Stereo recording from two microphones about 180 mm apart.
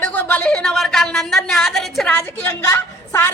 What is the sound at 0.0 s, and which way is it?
Speech, 10° left (ahead or behind).